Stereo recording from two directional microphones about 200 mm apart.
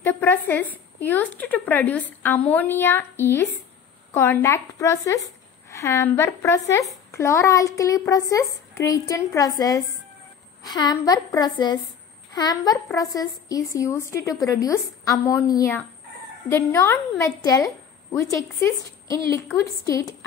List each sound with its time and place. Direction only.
0.0 s a woman's voice: 10° left (ahead or behind)
19.9 s speech: 15° left (ahead or behind)